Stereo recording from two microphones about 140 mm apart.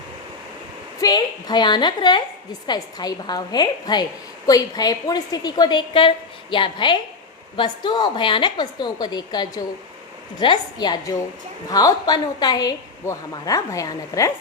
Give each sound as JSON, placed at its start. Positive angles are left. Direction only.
{"t": 0.9, "sound": "a woman's voice", "side_deg": 30}